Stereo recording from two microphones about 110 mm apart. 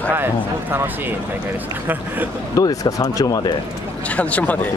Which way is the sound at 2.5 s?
30° left (ahead or behind).